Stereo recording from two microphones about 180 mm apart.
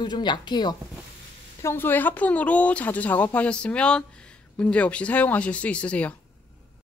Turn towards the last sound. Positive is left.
turn(degrees=5)  # may be behind; listen again after turning